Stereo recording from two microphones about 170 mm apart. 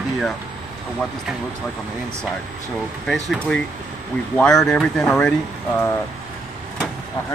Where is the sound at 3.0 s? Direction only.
Centre (ahead or behind).